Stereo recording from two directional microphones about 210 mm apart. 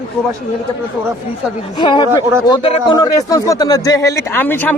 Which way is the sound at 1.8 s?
20° left (ahead or behind).